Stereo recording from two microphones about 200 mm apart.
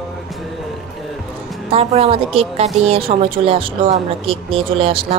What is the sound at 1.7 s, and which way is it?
A woman's voice, 30° right (ahead or behind).